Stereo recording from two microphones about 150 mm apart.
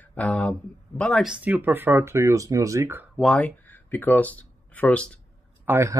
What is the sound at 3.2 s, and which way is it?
Speech, 5° left (ahead or behind).